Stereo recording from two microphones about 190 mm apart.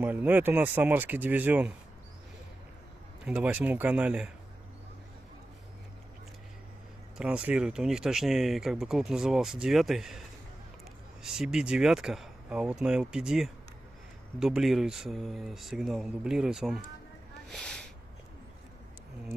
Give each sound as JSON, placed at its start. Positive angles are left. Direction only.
{"t": 0.0, "sound": "speech", "side_deg": -10}
{"t": 3.3, "sound": "speech", "side_deg": -5}
{"t": 7.2, "sound": "speech", "side_deg": -5}
{"t": 11.2, "sound": "speech", "side_deg": 0}